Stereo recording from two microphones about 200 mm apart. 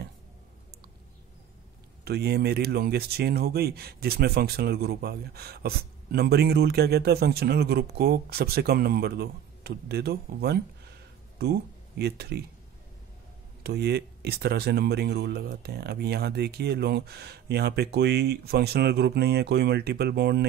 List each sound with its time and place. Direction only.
2.0 s speech: 55° right (ahead or behind)
12.0 s speech: 55° right (ahead or behind)
13.6 s speech: 55° right (ahead or behind)